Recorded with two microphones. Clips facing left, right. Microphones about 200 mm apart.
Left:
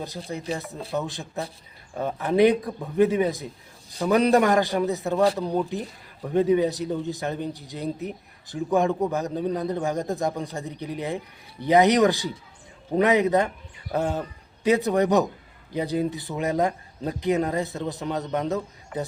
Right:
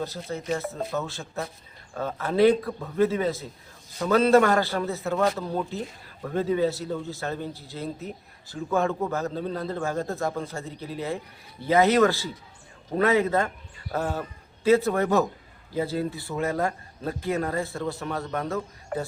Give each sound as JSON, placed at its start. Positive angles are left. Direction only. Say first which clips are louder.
{"t": 0.3, "sound": "a man's voice", "louder": "right 1 dB", "side_deg": 15}